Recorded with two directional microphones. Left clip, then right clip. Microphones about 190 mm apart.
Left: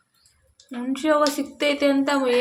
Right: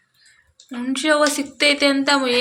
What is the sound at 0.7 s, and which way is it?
A woman's voice, 5° left (ahead or behind).